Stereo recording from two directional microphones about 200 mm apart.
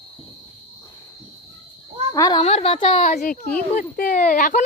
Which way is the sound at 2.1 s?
20° left (ahead or behind).